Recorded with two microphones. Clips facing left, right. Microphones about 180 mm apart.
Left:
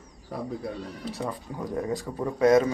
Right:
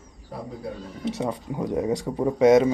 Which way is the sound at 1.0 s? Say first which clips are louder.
Right 7 dB; 20° right (ahead or behind).